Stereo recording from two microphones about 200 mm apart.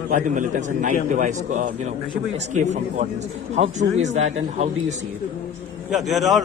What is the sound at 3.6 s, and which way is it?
A man's voice, 35° right (ahead or behind).